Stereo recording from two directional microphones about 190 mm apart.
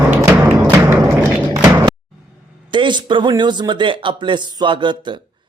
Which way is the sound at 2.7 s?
25° right (ahead or behind).